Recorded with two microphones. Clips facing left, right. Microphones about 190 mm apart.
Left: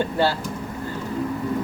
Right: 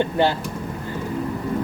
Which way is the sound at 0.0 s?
20° right (ahead or behind).